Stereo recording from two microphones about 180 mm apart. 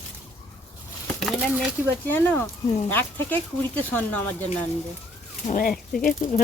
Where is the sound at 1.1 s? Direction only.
Centre (ahead or behind).